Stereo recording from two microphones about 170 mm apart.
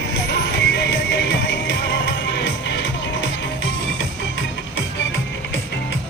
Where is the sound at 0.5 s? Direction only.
90° left.